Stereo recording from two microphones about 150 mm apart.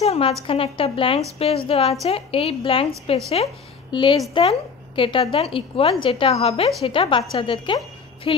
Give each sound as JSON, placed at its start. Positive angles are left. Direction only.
{"t": 0.0, "sound": "a woman's voice", "side_deg": 40}
{"t": 3.9, "sound": "a woman's voice", "side_deg": 35}